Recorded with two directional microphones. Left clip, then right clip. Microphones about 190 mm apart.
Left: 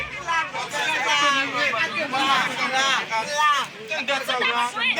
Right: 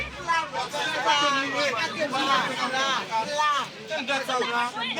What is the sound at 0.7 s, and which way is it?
A man's voice, 10° left (ahead or behind).